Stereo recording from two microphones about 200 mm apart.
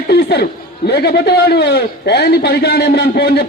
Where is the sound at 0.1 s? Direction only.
55° left (ahead or behind).